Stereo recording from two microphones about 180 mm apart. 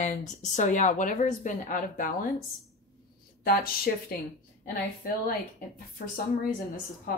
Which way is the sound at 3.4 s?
55° left (ahead or behind).